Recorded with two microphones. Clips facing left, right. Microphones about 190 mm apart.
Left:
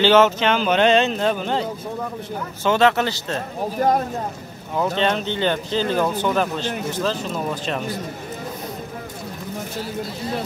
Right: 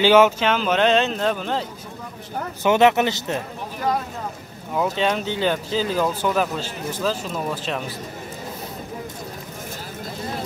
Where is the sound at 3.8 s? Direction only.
50° left (ahead or behind).